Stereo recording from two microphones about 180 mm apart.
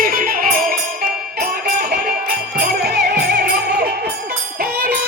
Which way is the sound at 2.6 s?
65° right (ahead or behind).